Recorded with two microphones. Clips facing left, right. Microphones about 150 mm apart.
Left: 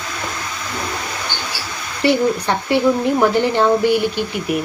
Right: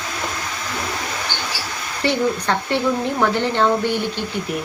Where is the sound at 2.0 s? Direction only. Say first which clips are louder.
Left 4 dB; 10° left (ahead or behind).